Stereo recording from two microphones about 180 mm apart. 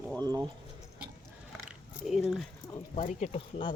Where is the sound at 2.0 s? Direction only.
Centre (ahead or behind).